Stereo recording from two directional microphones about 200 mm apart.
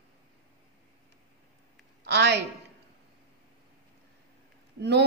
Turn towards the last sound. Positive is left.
turn(degrees=-55)  # may be behind; listen again after turning